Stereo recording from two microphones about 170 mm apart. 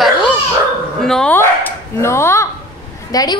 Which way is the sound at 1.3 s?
15° left (ahead or behind).